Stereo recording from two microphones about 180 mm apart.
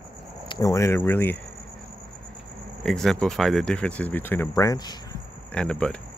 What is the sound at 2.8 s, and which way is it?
Speech, 5° left (ahead or behind).